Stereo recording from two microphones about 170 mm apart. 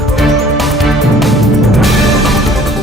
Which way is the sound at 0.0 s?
Centre (ahead or behind).